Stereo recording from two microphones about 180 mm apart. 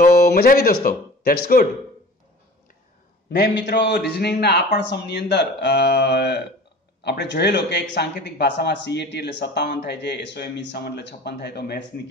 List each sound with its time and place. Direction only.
0.2 s speech: 60° left (ahead or behind)
3.3 s speech: 70° left (ahead or behind)